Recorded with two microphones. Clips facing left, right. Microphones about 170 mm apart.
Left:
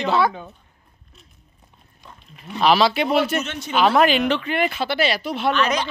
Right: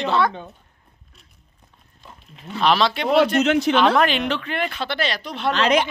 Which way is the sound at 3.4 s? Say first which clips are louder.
Right 14 dB; 90° right.